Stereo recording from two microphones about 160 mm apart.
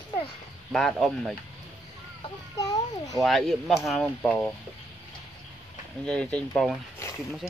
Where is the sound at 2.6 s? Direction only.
20° left (ahead or behind).